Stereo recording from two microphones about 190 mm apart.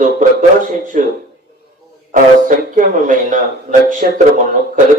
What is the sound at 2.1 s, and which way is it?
A man's voice, 45° right (ahead or behind).